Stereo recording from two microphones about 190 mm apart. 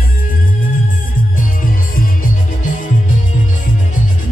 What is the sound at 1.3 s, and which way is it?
Music, 45° left (ahead or behind).